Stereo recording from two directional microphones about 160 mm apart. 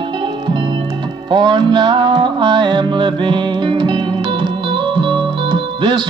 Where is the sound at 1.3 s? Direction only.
30° right (ahead or behind).